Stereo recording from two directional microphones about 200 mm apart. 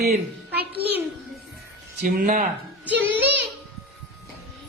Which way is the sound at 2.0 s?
45° right (ahead or behind).